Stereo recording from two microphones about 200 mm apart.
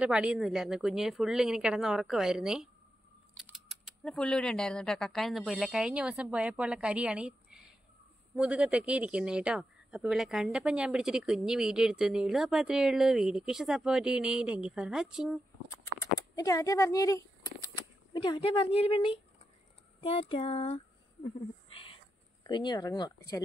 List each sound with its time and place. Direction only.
0.0 s speech: 5° right (ahead or behind)
16.0 s a woman's voice: 15° left (ahead or behind)
21.7 s whispering: 25° left (ahead or behind)
22.4 s a woman's voice: 20° left (ahead or behind)